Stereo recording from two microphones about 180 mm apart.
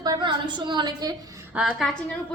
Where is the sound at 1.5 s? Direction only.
5° right (ahead or behind).